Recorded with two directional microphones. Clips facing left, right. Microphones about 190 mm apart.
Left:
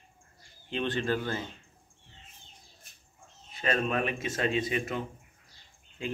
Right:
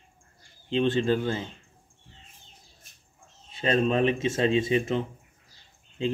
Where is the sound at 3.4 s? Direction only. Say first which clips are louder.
Right 5 dB; 25° right (ahead or behind).